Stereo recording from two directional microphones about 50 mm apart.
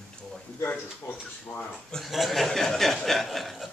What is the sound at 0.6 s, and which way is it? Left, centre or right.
Speech, left.